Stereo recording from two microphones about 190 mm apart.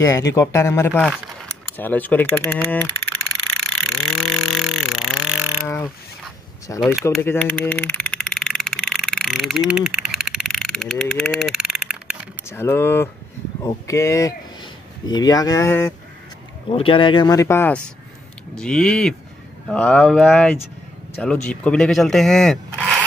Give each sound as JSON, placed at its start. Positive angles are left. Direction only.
{"t": 0.0, "sound": "mechanisms", "side_deg": 15}
{"t": 3.6, "sound": "vehicle", "side_deg": 5}
{"t": 5.7, "sound": "a sound", "side_deg": 10}
{"t": 12.4, "sound": "mechanisms", "side_deg": 10}
{"t": 13.6, "sound": "speech", "side_deg": 15}
{"t": 16.7, "sound": "speech", "side_deg": 25}
{"t": 19.7, "sound": "mechanisms", "side_deg": 5}
{"t": 21.2, "sound": "speech", "side_deg": 5}